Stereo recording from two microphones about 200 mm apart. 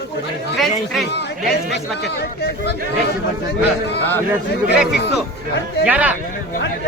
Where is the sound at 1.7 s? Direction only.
55° left (ahead or behind).